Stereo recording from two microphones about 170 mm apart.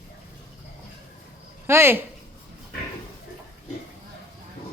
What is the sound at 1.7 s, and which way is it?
Speech, 15° right (ahead or behind).